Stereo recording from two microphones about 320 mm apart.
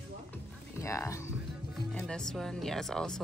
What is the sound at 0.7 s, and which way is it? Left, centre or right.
Speech, centre.